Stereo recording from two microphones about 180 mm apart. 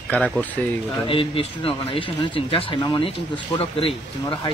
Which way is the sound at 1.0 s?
30° left (ahead or behind).